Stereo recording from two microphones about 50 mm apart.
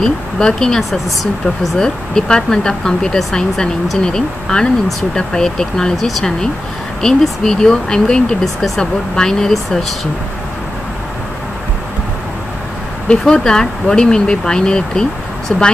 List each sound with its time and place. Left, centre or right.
0.0 s speech: centre
8.5 s speech: centre
9.1 s speech: centre
13.2 s speech: centre